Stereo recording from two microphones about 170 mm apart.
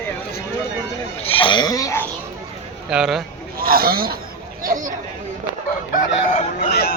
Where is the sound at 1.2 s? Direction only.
30° left (ahead or behind).